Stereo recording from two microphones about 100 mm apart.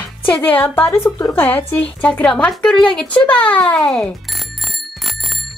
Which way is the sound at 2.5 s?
10° left (ahead or behind).